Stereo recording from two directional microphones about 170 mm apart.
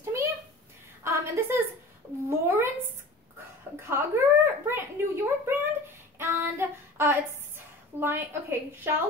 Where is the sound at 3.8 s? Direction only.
15° right (ahead or behind).